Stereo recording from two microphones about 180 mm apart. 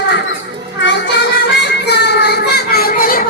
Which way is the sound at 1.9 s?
70° left (ahead or behind).